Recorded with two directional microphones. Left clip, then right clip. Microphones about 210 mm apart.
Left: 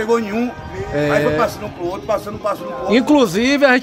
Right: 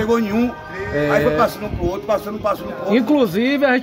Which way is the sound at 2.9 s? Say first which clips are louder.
Left 3 dB; 20° left (ahead or behind).